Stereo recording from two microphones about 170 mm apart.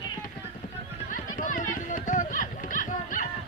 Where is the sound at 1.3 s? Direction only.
50° left (ahead or behind).